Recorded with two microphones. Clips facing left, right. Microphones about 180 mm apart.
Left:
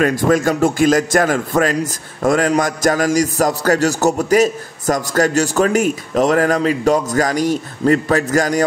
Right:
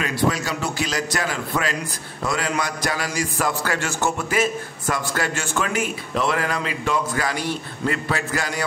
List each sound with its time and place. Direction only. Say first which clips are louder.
0.0 s a man's voice: left 9 dB; 45° left (ahead or behind)